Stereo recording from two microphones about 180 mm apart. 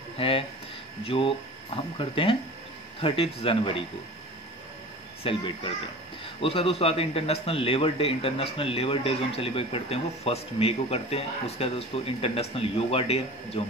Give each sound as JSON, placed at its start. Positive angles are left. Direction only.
{"t": 0.2, "sound": "speech", "side_deg": 30}
{"t": 5.2, "sound": "speech", "side_deg": 30}
{"t": 6.4, "sound": "speech", "side_deg": 30}